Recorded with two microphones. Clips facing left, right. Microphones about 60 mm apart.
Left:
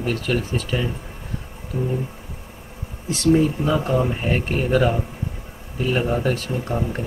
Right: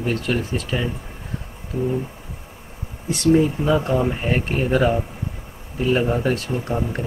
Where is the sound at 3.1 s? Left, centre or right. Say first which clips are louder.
Right 1 dB; centre.